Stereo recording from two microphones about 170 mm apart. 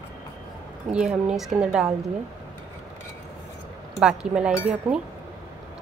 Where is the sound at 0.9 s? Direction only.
5° right (ahead or behind).